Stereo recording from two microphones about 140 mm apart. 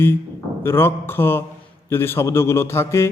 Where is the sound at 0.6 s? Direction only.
15° left (ahead or behind).